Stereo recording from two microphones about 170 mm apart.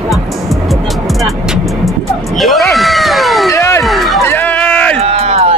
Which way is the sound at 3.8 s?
Centre (ahead or behind).